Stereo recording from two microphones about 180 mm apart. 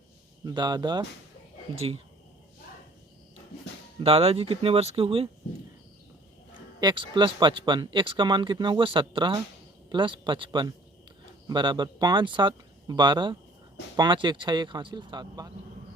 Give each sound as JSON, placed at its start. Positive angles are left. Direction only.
{"t": 0.4, "sound": "speech", "side_deg": -25}
{"t": 1.7, "sound": "speech", "side_deg": -35}
{"t": 4.0, "sound": "speech", "side_deg": -35}
{"t": 6.7, "sound": "speech", "side_deg": -25}